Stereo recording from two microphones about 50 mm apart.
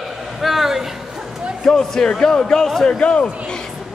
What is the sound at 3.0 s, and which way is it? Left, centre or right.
Speech, left.